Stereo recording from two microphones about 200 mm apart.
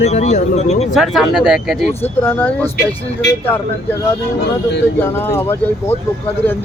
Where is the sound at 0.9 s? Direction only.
Centre (ahead or behind).